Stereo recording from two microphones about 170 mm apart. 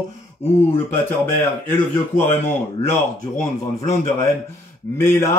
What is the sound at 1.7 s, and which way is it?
Speech, 10° left (ahead or behind).